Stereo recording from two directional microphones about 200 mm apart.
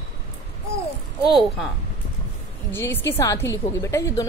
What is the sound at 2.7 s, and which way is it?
A woman's voice, 10° left (ahead or behind).